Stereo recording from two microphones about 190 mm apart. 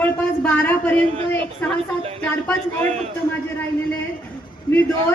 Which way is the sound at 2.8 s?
35° right (ahead or behind).